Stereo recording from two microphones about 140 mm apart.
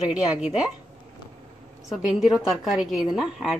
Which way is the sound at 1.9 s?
5° right (ahead or behind).